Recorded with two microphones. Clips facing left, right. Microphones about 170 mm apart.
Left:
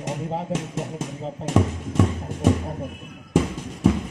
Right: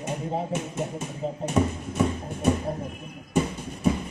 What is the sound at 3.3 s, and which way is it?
Music, 90° left.